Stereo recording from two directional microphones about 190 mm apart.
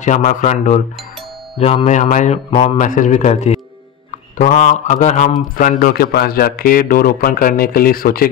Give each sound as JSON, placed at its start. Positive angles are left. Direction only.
{"t": 0.0, "sound": "mantra", "side_deg": 45}
{"t": 2.8, "sound": "mantra", "side_deg": 40}
{"t": 5.6, "sound": "a man's voice", "side_deg": 45}